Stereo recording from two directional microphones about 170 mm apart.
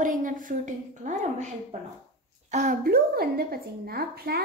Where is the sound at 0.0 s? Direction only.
50° right (ahead or behind).